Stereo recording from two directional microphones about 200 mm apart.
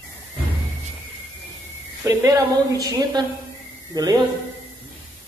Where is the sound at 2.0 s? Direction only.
15° right (ahead or behind).